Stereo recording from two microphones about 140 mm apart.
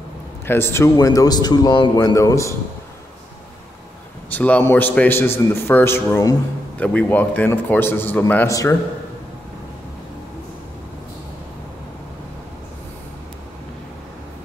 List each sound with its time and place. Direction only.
0.5 s speech: 15° left (ahead or behind)
4.3 s a man's voice: 10° left (ahead or behind)